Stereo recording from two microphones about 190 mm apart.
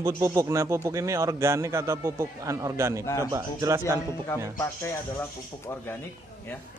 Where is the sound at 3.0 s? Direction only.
15° left (ahead or behind).